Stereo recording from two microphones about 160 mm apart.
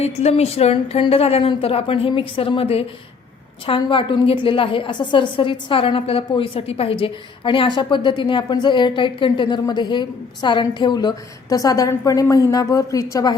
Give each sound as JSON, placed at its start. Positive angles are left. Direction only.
{"t": 0.0, "sound": "a woman's voice", "side_deg": 40}